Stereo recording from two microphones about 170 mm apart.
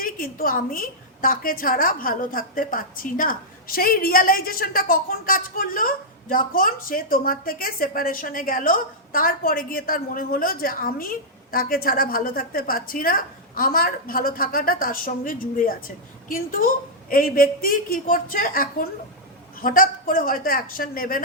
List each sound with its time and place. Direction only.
0.0 s a woman's voice: 60° left (ahead or behind)